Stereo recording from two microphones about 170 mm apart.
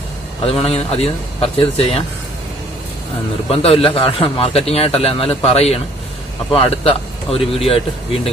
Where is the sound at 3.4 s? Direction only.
35° left (ahead or behind).